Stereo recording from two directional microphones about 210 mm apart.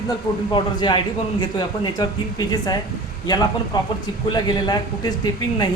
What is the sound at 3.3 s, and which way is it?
A man's voice, 20° left (ahead or behind).